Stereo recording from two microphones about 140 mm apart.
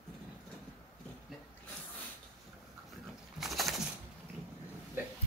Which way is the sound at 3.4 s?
Centre (ahead or behind).